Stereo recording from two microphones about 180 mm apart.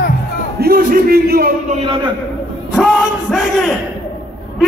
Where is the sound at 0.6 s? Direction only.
55° right (ahead or behind).